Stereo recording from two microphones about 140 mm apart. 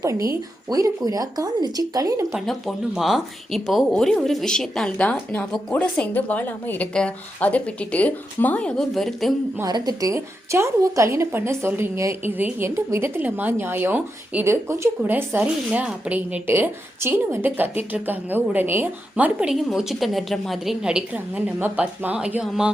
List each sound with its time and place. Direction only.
0.0 s speech: 20° right (ahead or behind)
2.3 s a woman's voice: centre (ahead or behind)
9.6 s a woman's voice: 25° right (ahead or behind); by 22.7 s 5° right (ahead or behind)